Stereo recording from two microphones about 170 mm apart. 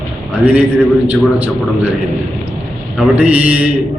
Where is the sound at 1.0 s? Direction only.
10° right (ahead or behind).